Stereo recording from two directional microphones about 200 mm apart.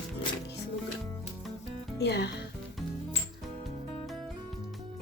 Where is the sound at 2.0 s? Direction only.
55° left (ahead or behind).